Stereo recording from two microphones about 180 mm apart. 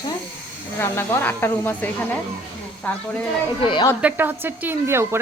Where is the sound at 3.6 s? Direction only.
25° left (ahead or behind).